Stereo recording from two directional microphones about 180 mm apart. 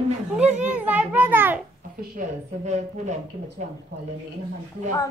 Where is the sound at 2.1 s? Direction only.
40° right (ahead or behind).